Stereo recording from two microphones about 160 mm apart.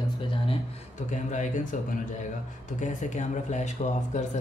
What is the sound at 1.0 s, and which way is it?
Speech, 50° left (ahead or behind).